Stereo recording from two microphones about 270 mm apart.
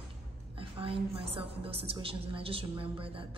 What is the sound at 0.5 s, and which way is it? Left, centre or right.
A woman's voice, centre.